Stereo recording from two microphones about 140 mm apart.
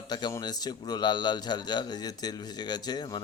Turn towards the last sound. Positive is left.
turn(degrees=30)  # may be behind; listen again after turning